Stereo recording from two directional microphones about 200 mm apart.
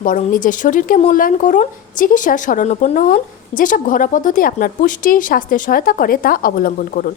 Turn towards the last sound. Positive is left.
turn(degrees=45)  # may be behind; listen again after turning